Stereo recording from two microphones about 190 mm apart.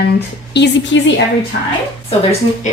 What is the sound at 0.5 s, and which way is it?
Speech, 70° left (ahead or behind).